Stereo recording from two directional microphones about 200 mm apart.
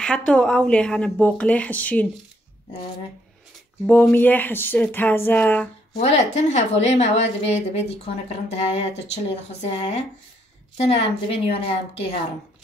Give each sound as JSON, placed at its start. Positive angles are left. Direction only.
{"t": 0.0, "sound": "speech", "side_deg": 5}
{"t": 3.8, "sound": "speech", "side_deg": 5}
{"t": 5.9, "sound": "speech", "side_deg": 35}